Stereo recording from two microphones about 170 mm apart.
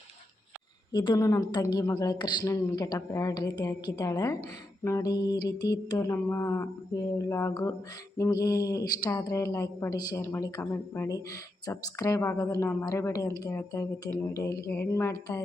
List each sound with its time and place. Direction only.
0.9 s a woman's voice: 25° left (ahead or behind)